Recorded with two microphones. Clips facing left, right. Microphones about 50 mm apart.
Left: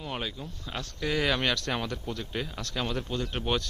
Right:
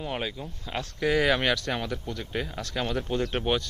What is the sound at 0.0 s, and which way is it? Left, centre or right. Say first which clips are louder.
Speech: right 3 dB; centre.